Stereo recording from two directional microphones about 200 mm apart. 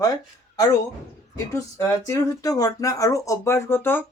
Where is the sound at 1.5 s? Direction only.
15° left (ahead or behind).